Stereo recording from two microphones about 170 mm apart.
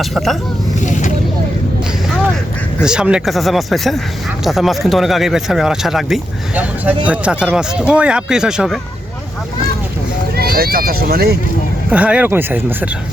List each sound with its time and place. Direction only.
0.0 s speech: centre (ahead or behind)
2.8 s speech: 5° right (ahead or behind)
10.3 s speech: 65° right (ahead or behind)
11.9 s speech: 10° right (ahead or behind)